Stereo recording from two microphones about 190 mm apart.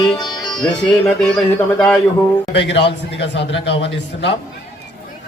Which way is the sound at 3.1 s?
70° left (ahead or behind).